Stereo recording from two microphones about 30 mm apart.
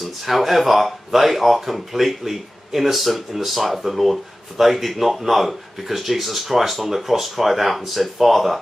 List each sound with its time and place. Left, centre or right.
0.2 s speech: centre